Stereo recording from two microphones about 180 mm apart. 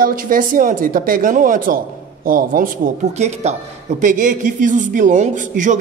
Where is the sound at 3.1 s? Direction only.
40° right (ahead or behind).